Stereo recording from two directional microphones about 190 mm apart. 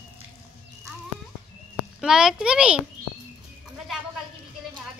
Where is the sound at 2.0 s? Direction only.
5° right (ahead or behind).